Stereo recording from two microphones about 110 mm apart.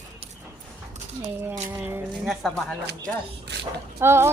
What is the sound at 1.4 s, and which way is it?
Speech, 30° right (ahead or behind).